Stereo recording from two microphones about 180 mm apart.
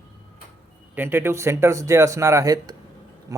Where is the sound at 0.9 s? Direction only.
10° right (ahead or behind).